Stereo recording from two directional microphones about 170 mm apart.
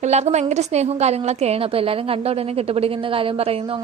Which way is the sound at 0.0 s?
40° right (ahead or behind).